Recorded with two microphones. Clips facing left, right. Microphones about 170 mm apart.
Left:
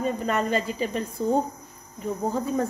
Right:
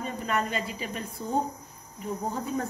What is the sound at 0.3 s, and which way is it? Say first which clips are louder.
Speech: left 2 dB; 35° left (ahead or behind).